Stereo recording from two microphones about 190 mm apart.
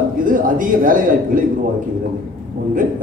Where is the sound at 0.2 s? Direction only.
45° right (ahead or behind).